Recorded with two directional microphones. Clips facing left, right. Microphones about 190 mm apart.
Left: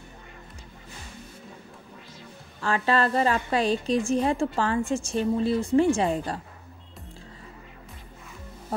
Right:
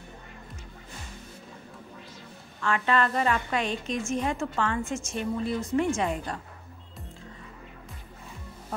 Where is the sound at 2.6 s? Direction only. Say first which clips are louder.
Left 2 dB; 35° left (ahead or behind).